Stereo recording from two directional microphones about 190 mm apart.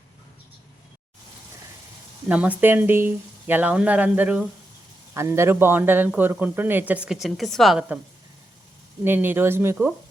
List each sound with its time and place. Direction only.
2.2 s speech: 5° right (ahead or behind)
9.0 s speech: 10° right (ahead or behind)